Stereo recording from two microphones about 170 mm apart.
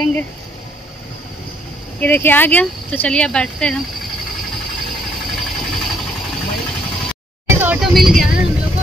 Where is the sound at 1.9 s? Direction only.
10° left (ahead or behind).